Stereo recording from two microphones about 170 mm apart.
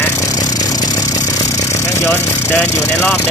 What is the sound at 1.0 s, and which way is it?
Vehicle, 45° left (ahead or behind).